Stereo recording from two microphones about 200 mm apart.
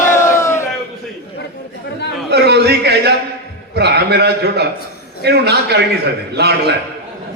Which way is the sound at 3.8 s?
55° right (ahead or behind).